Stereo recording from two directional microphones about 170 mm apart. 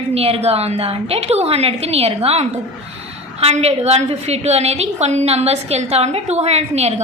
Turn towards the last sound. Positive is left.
turn(degrees=-40)  # may be behind; listen again after turning